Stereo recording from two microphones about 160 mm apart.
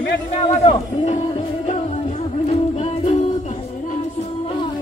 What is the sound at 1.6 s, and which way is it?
Music, 45° left (ahead or behind).